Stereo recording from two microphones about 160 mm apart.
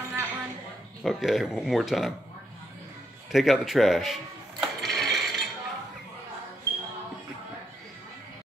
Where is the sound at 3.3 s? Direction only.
Centre (ahead or behind).